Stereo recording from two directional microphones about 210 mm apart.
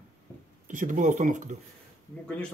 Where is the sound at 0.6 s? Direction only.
40° right (ahead or behind).